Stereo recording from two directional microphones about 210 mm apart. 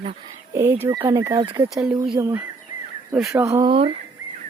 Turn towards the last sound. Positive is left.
turn(degrees=-25)  # may be behind; listen again after turning